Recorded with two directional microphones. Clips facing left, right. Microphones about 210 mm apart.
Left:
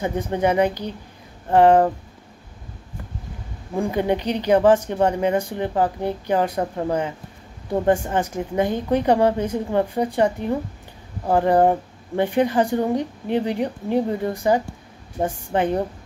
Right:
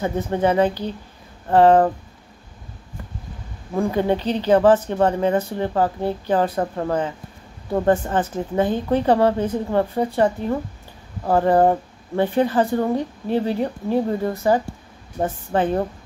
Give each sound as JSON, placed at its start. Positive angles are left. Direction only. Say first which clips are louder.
{"t": 0.0, "sound": "a woman's voice", "louder": "right 1 dB", "side_deg": 15}
{"t": 3.7, "sound": "a woman's voice", "louder": "right 1 dB", "side_deg": 15}